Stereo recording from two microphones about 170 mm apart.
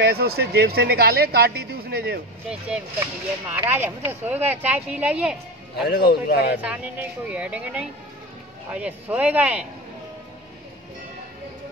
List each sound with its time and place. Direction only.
0.0 s speech: 65° right (ahead or behind)
3.4 s speech: 10° right (ahead or behind)
5.9 s a man's voice: 70° left (ahead or behind)
6.5 s speech: 5° right (ahead or behind)